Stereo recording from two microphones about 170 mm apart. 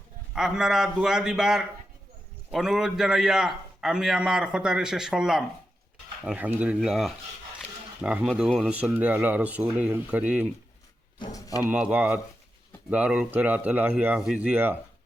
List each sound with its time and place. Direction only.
0.3 s a man's voice: 5° right (ahead or behind)
11.2 s speech: 20° left (ahead or behind)
11.7 s speech: 5° right (ahead or behind)